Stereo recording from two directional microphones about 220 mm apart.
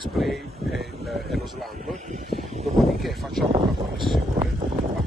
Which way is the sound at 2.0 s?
30° right (ahead or behind).